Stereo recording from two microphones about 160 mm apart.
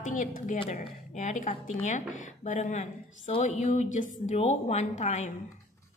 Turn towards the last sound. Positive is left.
turn(degrees=45)  # may be behind; listen again after turning